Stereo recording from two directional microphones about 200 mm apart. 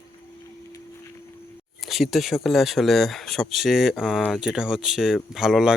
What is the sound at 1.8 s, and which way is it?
Speech, centre (ahead or behind).